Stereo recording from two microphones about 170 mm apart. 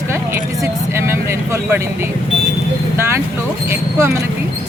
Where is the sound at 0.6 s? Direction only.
15° right (ahead or behind).